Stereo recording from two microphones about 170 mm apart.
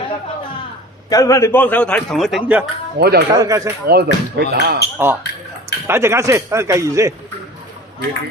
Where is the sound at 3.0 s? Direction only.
70° right (ahead or behind).